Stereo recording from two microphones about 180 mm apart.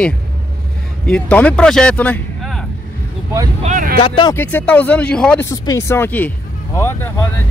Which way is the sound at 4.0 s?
25° left (ahead or behind).